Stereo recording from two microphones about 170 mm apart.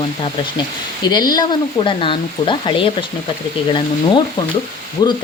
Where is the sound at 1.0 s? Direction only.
25° left (ahead or behind).